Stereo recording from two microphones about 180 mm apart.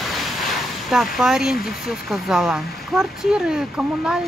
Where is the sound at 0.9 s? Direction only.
5° right (ahead or behind).